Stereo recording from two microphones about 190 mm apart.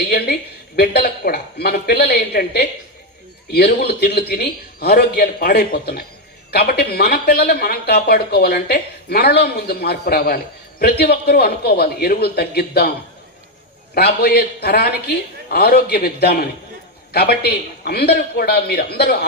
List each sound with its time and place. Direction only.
0.1 s speech: 60° left (ahead or behind)
13.9 s speech: 55° left (ahead or behind)